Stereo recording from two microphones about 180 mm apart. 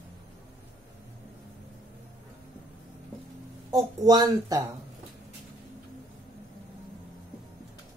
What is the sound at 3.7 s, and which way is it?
Speech, 20° right (ahead or behind).